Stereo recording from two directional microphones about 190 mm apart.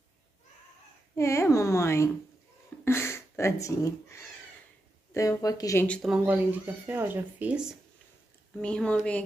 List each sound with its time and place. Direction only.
1.1 s speech: 15° left (ahead or behind)
5.9 s a woman's voice: 5° right (ahead or behind)
8.5 s a woman's voice: 5° left (ahead or behind)